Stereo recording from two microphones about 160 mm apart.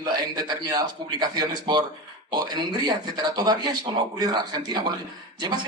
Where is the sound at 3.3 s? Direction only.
25° right (ahead or behind).